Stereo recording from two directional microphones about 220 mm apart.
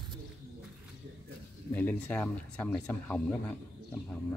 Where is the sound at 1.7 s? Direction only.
10° left (ahead or behind).